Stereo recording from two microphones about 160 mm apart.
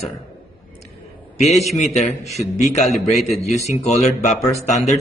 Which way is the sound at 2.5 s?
45° left (ahead or behind).